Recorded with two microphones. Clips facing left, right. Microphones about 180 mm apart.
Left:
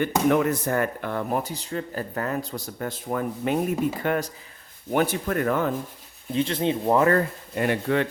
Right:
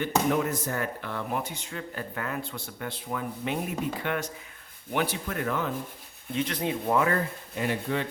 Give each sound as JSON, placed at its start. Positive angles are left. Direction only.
{"t": 0.0, "sound": "speech", "side_deg": 65}
{"t": 6.3, "sound": "speech", "side_deg": 30}
{"t": 7.0, "sound": "speech", "side_deg": 55}